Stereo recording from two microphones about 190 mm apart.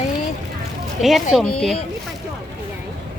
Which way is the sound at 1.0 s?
Centre (ahead or behind).